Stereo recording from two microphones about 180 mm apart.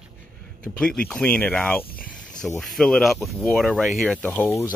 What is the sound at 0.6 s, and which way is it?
Speech, 5° left (ahead or behind).